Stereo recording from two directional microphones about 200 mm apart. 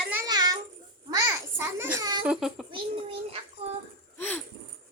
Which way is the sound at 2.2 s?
5° right (ahead or behind).